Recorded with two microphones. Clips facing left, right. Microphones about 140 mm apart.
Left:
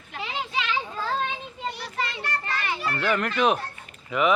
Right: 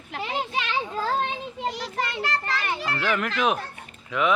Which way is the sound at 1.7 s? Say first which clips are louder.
Right 3 dB; 75° right (ahead or behind).